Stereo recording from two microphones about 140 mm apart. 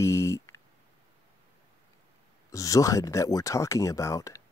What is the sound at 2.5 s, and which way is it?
Speech, 25° left (ahead or behind).